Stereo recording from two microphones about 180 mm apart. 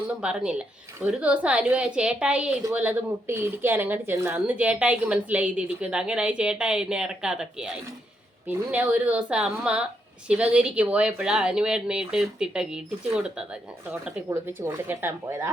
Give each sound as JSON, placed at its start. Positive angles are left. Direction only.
{"t": 0.2, "sound": "a woman's voice", "side_deg": -5}